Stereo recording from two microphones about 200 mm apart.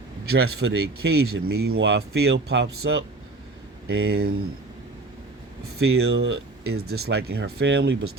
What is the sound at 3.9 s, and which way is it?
Speech, 90° right.